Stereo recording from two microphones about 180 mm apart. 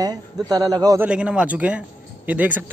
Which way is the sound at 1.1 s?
5° right (ahead or behind).